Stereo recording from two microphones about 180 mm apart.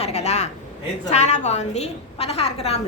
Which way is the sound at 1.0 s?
40° left (ahead or behind).